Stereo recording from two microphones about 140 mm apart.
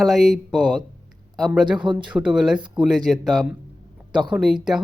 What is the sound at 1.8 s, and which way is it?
Speech, 35° right (ahead or behind).